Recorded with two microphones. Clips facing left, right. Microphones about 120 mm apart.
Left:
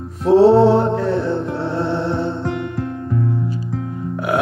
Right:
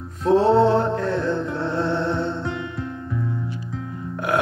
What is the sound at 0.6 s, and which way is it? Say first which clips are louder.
Music: left 4 dB; 15° left (ahead or behind).